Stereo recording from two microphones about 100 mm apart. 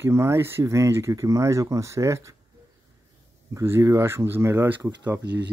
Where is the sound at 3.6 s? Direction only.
30° right (ahead or behind).